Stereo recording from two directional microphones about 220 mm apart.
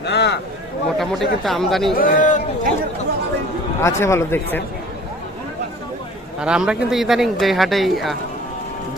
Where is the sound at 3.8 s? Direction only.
10° left (ahead or behind).